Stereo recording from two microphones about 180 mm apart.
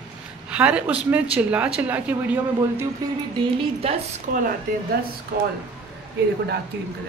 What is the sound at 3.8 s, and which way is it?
Speech, 35° right (ahead or behind).